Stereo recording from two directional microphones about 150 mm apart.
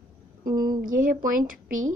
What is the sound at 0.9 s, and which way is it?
Speech, 65° right (ahead or behind).